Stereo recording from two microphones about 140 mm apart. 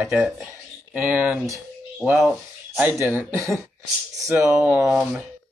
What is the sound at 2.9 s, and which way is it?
Speech, 15° right (ahead or behind).